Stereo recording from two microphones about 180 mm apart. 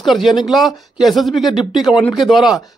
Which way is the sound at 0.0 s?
Centre (ahead or behind).